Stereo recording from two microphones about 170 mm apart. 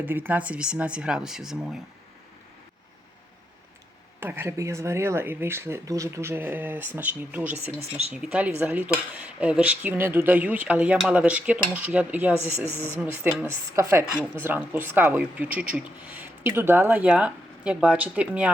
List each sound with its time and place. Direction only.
0.0 s speech: 10° right (ahead or behind)
4.2 s speech: 15° right (ahead or behind)
7.5 s speech: 40° right (ahead or behind)
8.1 s speech: 5° right (ahead or behind)